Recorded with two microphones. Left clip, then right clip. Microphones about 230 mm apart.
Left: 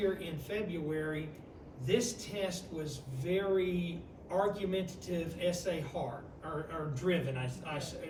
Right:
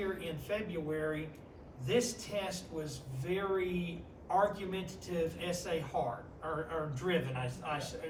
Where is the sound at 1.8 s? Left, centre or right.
Centre.